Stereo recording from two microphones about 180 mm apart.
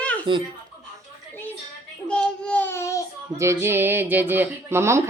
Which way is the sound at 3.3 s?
15° right (ahead or behind).